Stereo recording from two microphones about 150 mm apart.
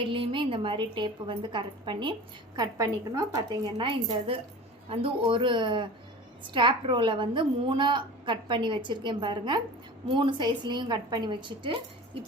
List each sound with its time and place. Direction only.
0.1 s a woman's voice: 35° right (ahead or behind)
2.6 s a woman's voice: 20° right (ahead or behind)